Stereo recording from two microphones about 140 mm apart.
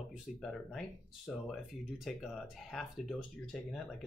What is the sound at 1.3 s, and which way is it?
Speech, centre (ahead or behind).